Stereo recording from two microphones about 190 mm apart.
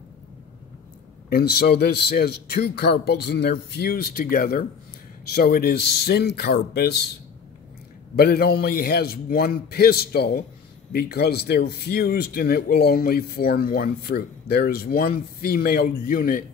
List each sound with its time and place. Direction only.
1.3 s speech: 55° left (ahead or behind)
8.2 s speech: 55° left (ahead or behind)